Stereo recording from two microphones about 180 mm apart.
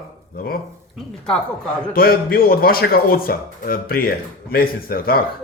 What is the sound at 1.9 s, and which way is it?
A man's voice, 55° left (ahead or behind).